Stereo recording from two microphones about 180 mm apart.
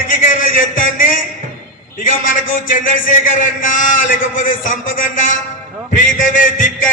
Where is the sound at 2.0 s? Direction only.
50° left (ahead or behind).